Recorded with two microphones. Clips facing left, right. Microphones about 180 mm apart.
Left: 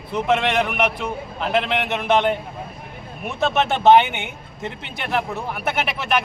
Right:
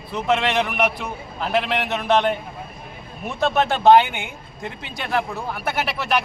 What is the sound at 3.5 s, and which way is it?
Speech, 20° left (ahead or behind).